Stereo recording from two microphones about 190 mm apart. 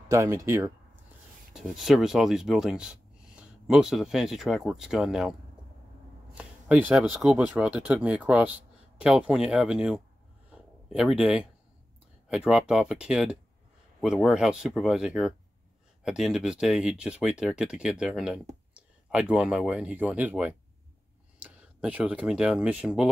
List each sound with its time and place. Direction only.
0.1 s speech: 15° right (ahead or behind)
1.5 s speech: centre (ahead or behind)
6.3 s speech: 5° right (ahead or behind)
10.5 s a sound: 5° right (ahead or behind)
12.3 s speech: 5° right (ahead or behind)